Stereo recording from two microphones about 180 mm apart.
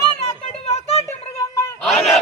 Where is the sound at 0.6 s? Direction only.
35° left (ahead or behind).